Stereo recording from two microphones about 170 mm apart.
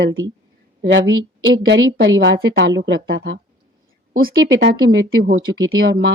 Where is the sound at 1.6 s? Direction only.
90° right.